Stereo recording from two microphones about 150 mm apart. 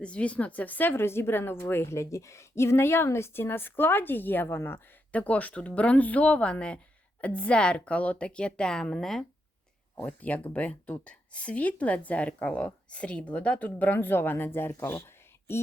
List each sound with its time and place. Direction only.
0.0 s speech: 5° left (ahead or behind)